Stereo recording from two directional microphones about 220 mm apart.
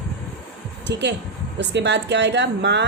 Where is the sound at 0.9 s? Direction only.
50° right (ahead or behind).